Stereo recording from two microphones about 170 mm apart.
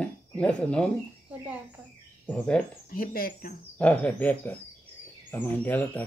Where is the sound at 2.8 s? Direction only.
60° left (ahead or behind).